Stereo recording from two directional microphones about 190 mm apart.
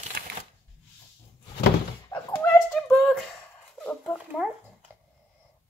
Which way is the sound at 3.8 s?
10° left (ahead or behind).